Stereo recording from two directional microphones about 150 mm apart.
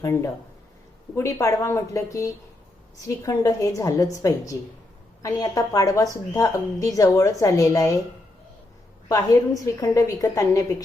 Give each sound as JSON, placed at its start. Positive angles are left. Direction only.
{"t": 0.0, "sound": "a woman's voice", "side_deg": 20}
{"t": 9.0, "sound": "a woman's voice", "side_deg": 25}